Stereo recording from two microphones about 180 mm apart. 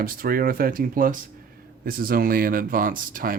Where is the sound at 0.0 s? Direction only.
55° right (ahead or behind).